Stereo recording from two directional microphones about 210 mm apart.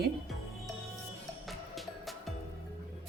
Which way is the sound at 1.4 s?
Centre (ahead or behind).